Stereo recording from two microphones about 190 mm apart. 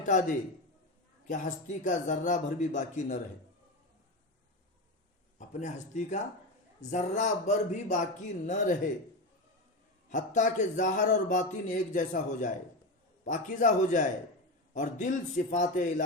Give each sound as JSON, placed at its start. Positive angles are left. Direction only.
{"t": 0.0, "sound": "speech", "side_deg": 40}
{"t": 5.4, "sound": "speech", "side_deg": 40}
{"t": 10.1, "sound": "speech", "side_deg": 40}